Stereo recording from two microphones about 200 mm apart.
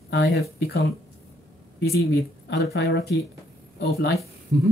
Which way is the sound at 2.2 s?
55° left (ahead or behind).